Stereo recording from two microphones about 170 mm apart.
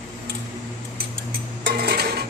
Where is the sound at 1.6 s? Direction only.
65° right (ahead or behind).